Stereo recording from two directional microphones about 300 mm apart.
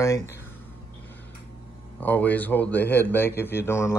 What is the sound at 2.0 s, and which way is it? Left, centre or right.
Speech, centre.